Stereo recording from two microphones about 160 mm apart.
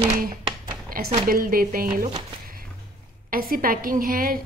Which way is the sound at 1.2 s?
60° right (ahead or behind).